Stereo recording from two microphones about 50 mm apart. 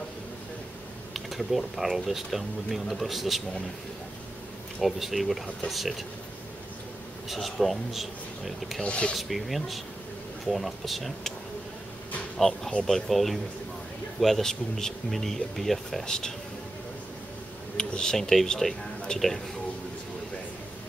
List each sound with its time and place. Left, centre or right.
1.1 s speech: centre
4.8 s speech: centre
7.2 s speech: centre
8.8 s speech: left
9.1 s speech: centre
12.4 s speech: centre
17.7 s speech: centre